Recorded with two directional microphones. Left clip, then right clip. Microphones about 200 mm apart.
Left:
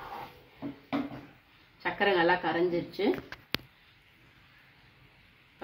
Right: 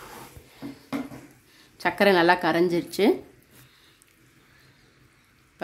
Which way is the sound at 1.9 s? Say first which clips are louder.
Right 6 dB; 65° right (ahead or behind).